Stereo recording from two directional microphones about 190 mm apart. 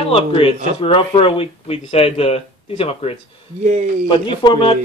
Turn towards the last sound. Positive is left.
turn(degrees=25)  # may be behind; listen again after turning